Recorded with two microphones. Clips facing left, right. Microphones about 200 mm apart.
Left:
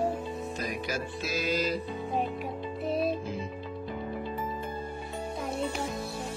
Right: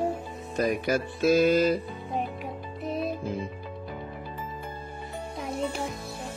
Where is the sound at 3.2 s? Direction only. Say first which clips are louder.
Right 3 dB; 55° right (ahead or behind).